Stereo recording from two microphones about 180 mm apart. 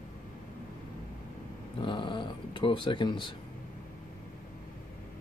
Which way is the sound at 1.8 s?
25° left (ahead or behind).